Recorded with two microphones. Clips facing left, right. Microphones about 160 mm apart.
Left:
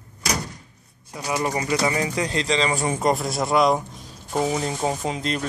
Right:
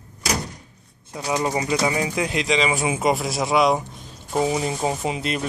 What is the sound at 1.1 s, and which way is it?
Speech, 20° right (ahead or behind).